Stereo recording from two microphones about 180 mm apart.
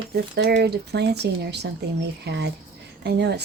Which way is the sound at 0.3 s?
70° right (ahead or behind).